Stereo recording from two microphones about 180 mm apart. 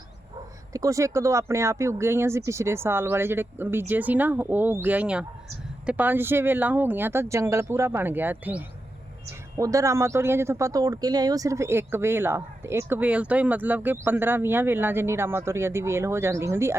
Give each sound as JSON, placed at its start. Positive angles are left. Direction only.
{"t": 0.7, "sound": "a man's voice", "side_deg": -20}